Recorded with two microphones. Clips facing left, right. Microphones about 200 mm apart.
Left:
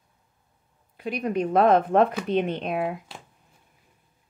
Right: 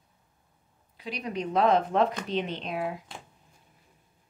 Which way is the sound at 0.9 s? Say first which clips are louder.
Left 7 dB; 55° left (ahead or behind).